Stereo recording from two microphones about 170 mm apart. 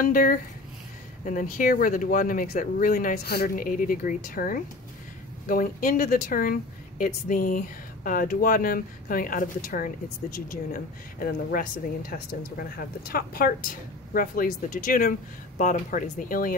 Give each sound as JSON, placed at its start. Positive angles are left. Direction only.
{"t": 0.0, "sound": "speech", "side_deg": 55}